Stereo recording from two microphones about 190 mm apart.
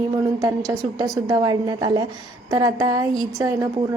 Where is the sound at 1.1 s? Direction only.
20° right (ahead or behind).